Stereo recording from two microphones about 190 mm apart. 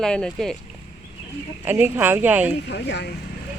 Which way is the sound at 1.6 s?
10° right (ahead or behind).